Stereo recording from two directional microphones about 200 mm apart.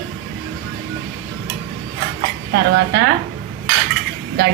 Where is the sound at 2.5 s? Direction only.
60° right (ahead or behind).